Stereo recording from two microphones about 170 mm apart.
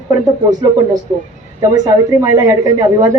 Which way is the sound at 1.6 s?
20° right (ahead or behind).